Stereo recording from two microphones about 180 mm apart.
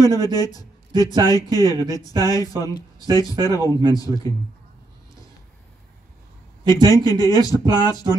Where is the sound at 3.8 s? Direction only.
20° left (ahead or behind).